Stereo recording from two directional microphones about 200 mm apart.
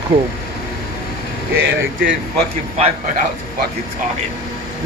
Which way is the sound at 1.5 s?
70° right (ahead or behind).